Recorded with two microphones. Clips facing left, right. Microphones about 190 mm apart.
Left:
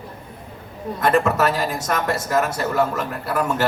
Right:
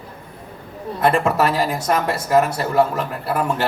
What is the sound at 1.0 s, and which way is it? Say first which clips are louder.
Speech: right 1 dB; 40° left (ahead or behind).